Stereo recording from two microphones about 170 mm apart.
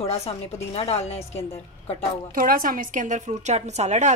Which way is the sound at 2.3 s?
55° right (ahead or behind).